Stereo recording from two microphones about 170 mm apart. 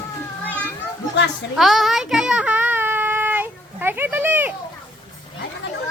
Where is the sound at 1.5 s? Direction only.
Centre (ahead or behind).